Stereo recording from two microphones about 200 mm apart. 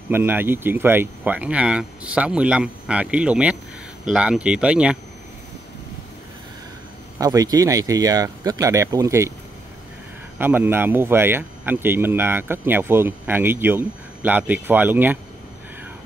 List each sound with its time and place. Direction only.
0.1 s a man's voice: 10° right (ahead or behind)
7.2 s a man's voice: 20° right (ahead or behind)
10.4 s a man's voice: 10° right (ahead or behind)